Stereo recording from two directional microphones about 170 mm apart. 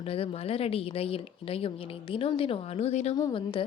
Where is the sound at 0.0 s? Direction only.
35° left (ahead or behind).